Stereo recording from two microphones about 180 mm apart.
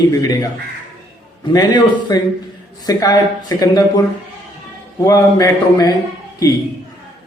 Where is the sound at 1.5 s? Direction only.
20° left (ahead or behind).